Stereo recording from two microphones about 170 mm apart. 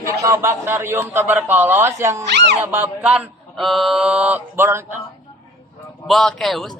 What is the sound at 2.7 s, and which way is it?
A man's voice, 10° right (ahead or behind).